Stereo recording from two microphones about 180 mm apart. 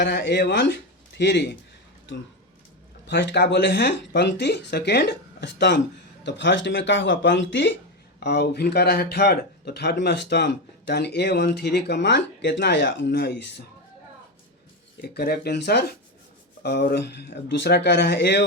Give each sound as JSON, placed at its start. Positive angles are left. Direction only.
{"t": 0.0, "sound": "speech", "side_deg": 70}
{"t": 3.1, "sound": "speech", "side_deg": 70}
{"t": 8.2, "sound": "speech", "side_deg": 65}
{"t": 15.0, "sound": "speech", "side_deg": 60}